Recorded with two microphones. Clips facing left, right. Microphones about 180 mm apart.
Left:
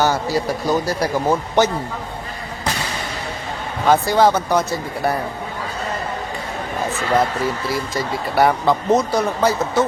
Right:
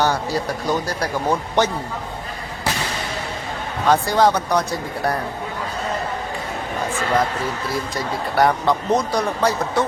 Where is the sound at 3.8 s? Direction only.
Centre (ahead or behind).